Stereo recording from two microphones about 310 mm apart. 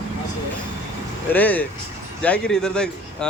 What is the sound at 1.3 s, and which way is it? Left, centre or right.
Speech, centre.